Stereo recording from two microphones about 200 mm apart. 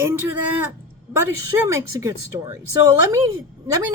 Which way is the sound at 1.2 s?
15° right (ahead or behind).